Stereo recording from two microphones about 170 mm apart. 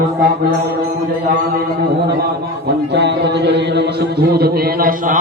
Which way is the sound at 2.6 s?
80° right.